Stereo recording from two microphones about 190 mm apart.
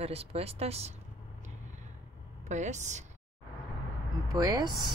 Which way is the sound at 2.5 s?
40° right (ahead or behind).